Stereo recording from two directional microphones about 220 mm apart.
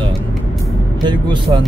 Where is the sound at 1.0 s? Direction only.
20° right (ahead or behind).